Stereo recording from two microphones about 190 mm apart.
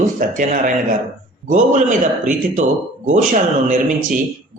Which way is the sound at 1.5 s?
40° right (ahead or behind).